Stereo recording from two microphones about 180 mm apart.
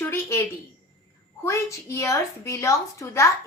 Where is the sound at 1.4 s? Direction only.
15° left (ahead or behind).